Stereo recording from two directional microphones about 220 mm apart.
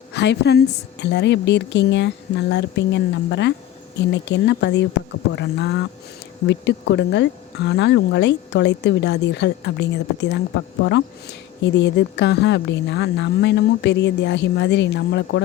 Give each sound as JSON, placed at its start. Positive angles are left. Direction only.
{"t": 0.1, "sound": "speech", "side_deg": 50}